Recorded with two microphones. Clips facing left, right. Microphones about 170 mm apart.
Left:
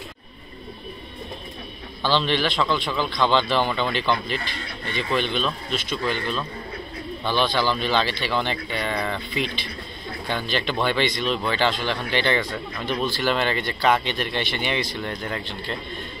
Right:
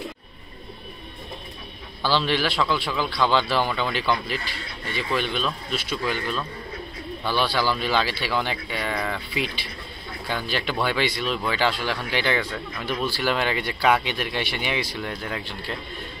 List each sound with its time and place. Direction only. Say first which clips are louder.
2.0 s speech: left 1 dB; 10° right (ahead or behind)